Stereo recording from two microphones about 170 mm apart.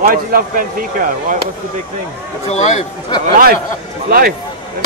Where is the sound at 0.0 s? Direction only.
55° right (ahead or behind).